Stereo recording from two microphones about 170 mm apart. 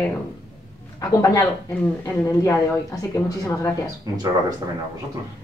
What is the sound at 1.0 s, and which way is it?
Speech, 20° left (ahead or behind).